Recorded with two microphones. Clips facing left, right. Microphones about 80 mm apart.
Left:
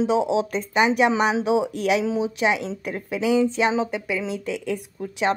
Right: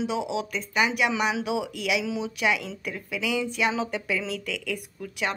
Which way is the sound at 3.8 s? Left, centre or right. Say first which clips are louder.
Left 3 dB; centre.